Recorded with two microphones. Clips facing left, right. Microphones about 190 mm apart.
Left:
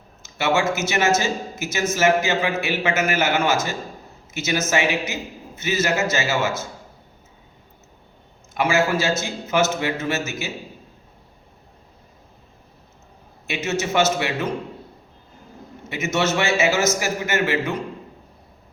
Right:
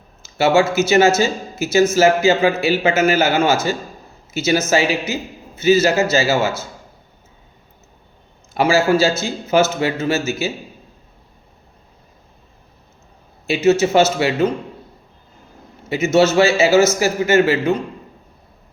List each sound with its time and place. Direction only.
0.2 s speech: 30° right (ahead or behind)
8.5 s speech: 30° right (ahead or behind)
13.5 s speech: 30° right (ahead or behind)
15.9 s speech: 30° right (ahead or behind)